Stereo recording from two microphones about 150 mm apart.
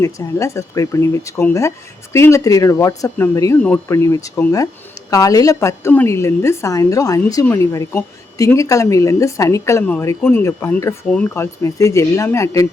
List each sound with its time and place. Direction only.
0.0 s a woman's voice: 20° left (ahead or behind)